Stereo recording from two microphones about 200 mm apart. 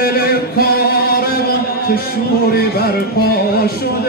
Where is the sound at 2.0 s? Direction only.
50° left (ahead or behind).